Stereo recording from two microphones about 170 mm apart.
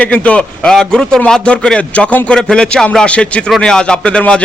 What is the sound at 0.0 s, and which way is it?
A man's voice, 10° left (ahead or behind).